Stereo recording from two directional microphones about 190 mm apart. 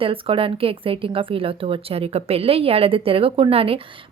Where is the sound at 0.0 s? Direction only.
30° right (ahead or behind).